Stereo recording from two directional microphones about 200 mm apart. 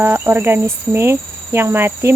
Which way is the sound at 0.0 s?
10° right (ahead or behind).